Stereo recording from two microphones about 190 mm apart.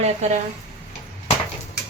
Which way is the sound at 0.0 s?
35° right (ahead or behind).